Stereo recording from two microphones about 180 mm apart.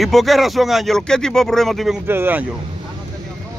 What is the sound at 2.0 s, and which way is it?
Speech, 10° right (ahead or behind).